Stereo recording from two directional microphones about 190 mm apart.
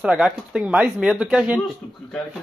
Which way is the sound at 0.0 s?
5° right (ahead or behind).